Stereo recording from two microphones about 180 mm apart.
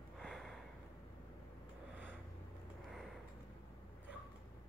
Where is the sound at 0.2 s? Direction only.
Centre (ahead or behind).